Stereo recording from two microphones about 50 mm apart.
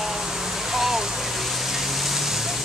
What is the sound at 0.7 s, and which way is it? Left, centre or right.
Waterfall, centre.